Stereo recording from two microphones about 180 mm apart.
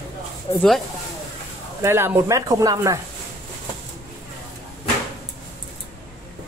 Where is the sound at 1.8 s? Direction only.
15° right (ahead or behind).